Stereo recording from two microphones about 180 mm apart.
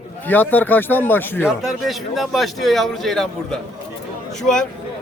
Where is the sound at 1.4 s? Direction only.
Centre (ahead or behind).